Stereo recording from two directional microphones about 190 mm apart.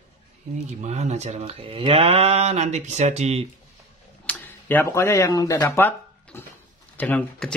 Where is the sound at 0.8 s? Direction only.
35° right (ahead or behind).